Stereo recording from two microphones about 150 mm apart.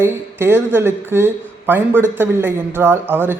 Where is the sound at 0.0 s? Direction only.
15° right (ahead or behind).